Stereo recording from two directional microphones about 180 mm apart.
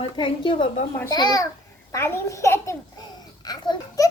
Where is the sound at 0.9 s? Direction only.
15° left (ahead or behind).